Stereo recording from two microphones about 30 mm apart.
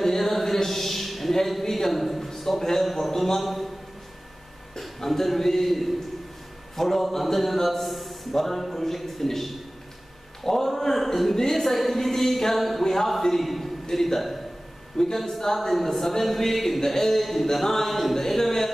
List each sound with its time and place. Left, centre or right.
0.0 s a sound: centre
2.8 s speech: centre
3.3 s a man's voice: centre
4.7 s a man's voice: centre
12.8 s speech: centre
13.4 s a man's voice: centre